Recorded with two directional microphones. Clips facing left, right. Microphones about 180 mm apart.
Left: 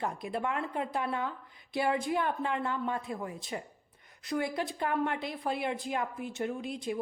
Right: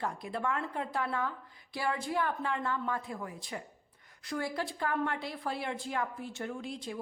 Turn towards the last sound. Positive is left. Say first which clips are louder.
# left 4 dB
turn(degrees=20)  # may be behind; listen again after turning